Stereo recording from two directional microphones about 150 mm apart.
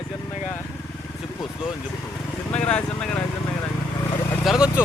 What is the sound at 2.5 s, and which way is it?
Speech, 10° left (ahead or behind).